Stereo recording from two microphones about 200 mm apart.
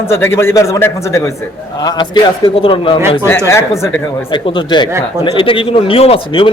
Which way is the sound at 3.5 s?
15° left (ahead or behind).